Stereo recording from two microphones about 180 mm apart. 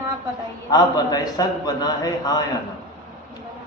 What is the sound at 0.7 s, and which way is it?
A man's voice, 20° left (ahead or behind).